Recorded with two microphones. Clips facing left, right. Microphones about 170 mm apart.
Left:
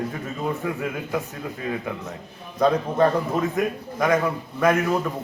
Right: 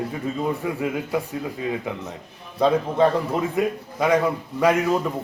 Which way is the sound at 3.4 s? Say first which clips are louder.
Right 1 dB; 10° right (ahead or behind).